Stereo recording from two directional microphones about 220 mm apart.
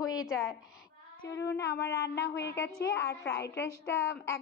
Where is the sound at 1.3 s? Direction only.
55° left (ahead or behind).